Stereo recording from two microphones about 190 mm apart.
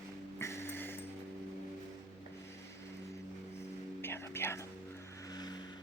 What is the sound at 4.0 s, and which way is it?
Whispering, 15° left (ahead or behind).